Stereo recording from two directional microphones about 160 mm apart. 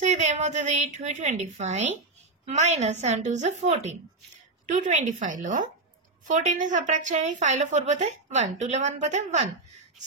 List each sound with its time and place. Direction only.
0.0 s a woman's voice: 45° right (ahead or behind)